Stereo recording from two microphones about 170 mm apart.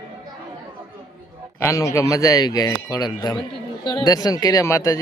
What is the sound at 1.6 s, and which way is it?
A man's voice, 15° left (ahead or behind).